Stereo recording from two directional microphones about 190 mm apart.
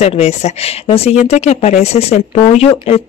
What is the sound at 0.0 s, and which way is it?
Speech, 35° left (ahead or behind).